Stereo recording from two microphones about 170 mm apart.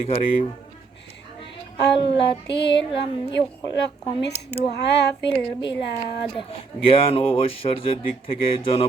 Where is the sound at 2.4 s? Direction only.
90° left.